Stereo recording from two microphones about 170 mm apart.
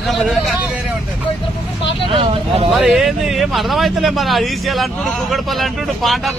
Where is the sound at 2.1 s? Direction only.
35° right (ahead or behind).